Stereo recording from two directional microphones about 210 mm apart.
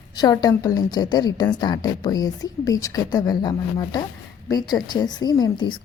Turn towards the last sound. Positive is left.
turn(degrees=20)  # may be behind; listen again after turning